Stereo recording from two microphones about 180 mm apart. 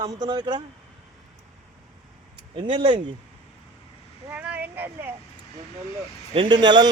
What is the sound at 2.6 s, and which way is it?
Speech, 30° right (ahead or behind).